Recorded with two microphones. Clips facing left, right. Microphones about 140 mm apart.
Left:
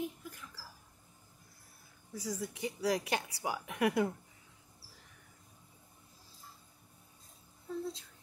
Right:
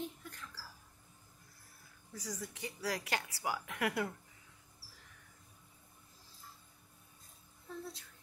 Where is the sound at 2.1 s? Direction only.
10° left (ahead or behind).